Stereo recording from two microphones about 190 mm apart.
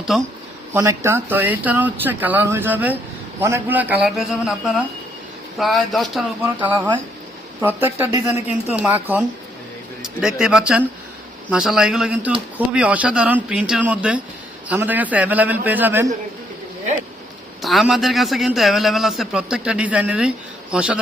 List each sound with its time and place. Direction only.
0.1 s a man's voice: centre (ahead or behind)
0.7 s speech: 15° right (ahead or behind)
5.5 s a man's voice: centre (ahead or behind)
6.7 s speech: 25° right (ahead or behind)
7.6 s speech: 10° right (ahead or behind)
8.1 s speech: 35° left (ahead or behind)
8.7 s a man's voice: 10° right (ahead or behind)
17.6 s a man's voice: centre (ahead or behind)